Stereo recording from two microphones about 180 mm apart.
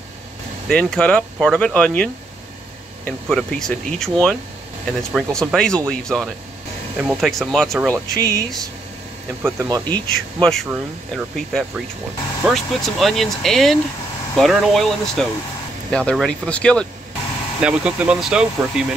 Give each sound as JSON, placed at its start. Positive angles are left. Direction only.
{"t": 0.7, "sound": "speech", "side_deg": 5}
{"t": 3.1, "sound": "speech", "side_deg": 0}
{"t": 7.0, "sound": "speech", "side_deg": -10}
{"t": 7.2, "sound": "speech", "side_deg": 0}
{"t": 7.9, "sound": "speech", "side_deg": -20}
{"t": 9.8, "sound": "speech", "side_deg": 5}
{"t": 17.6, "sound": "speech", "side_deg": -5}